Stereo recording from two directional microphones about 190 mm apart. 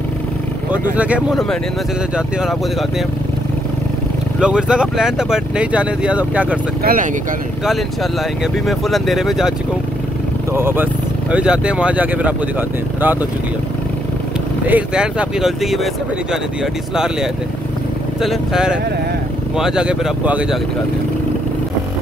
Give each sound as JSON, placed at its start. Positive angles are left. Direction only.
{"t": 0.9, "sound": "speech", "side_deg": -5}
{"t": 4.4, "sound": "speech", "side_deg": -5}
{"t": 6.8, "sound": "speech", "side_deg": -50}
{"t": 7.6, "sound": "speech", "side_deg": 0}
{"t": 10.5, "sound": "speech", "side_deg": -10}
{"t": 14.7, "sound": "speech", "side_deg": -5}